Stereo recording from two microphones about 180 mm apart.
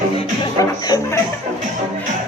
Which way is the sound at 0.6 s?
20° left (ahead or behind).